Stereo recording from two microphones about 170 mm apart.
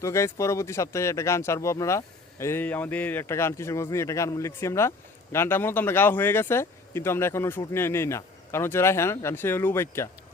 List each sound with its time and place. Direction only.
0.0 s speech: 15° left (ahead or behind)